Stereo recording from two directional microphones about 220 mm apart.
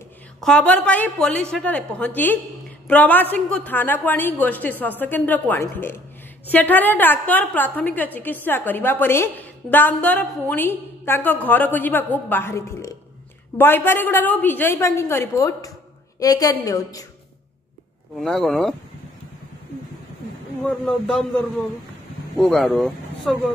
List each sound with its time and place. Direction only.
0.4 s a woman's voice: 5° left (ahead or behind)
18.2 s a woman's voice: centre (ahead or behind)
20.6 s a woman's voice: 5° left (ahead or behind)
22.4 s speech: centre (ahead or behind)